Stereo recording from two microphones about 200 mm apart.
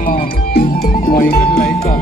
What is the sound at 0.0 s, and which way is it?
Music, 45° left (ahead or behind).